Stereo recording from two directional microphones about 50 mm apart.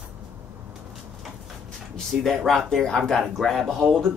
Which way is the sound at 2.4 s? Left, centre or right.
Centre.